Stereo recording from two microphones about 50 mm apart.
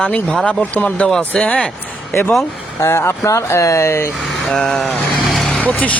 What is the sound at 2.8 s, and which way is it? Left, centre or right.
Speech, left.